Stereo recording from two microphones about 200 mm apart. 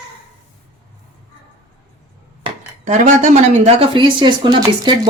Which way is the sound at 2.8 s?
35° right (ahead or behind).